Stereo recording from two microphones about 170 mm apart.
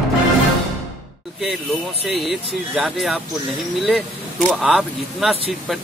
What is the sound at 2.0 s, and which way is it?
Speech, centre (ahead or behind).